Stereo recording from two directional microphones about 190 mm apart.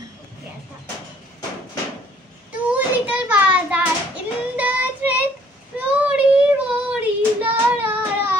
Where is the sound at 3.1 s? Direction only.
10° right (ahead or behind).